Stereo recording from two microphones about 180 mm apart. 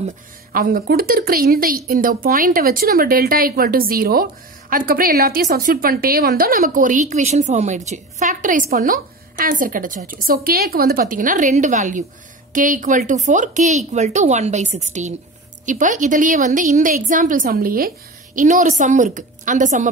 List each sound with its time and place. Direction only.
0.5 s a woman's voice: 55° right (ahead or behind)